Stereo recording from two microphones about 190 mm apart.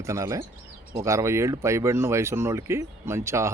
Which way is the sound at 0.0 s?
15° right (ahead or behind).